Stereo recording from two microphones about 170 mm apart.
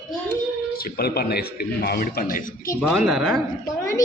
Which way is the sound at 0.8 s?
65° left (ahead or behind).